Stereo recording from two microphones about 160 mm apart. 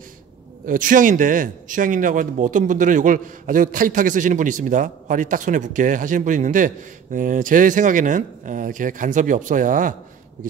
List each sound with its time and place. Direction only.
0.7 s a man's voice: 55° right (ahead or behind)